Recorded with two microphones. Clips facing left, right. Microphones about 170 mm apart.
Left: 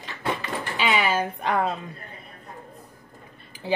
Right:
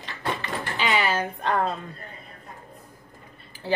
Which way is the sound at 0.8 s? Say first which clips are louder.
Left 1 dB; 10° left (ahead or behind).